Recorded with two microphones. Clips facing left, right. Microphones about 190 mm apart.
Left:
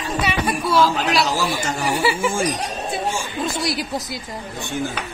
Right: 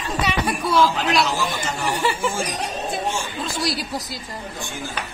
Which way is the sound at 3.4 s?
20° left (ahead or behind).